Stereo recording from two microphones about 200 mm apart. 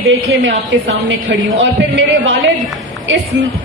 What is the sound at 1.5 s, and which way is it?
Speech, 65° right (ahead or behind).